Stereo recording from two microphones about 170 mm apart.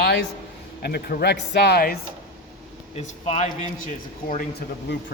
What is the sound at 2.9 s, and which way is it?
Speech, 40° left (ahead or behind).